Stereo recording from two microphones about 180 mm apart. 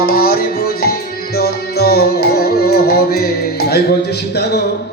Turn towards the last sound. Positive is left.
turn(degrees=60)  # may be behind; listen again after turning